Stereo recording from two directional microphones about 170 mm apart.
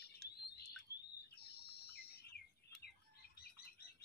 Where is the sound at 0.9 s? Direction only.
75° left (ahead or behind).